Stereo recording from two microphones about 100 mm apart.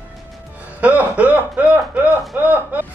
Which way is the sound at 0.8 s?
15° right (ahead or behind).